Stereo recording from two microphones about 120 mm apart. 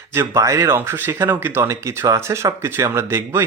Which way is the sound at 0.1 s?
20° right (ahead or behind).